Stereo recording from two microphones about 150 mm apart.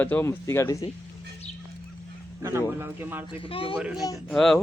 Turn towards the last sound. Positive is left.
turn(degrees=5)  # may be behind; listen again after turning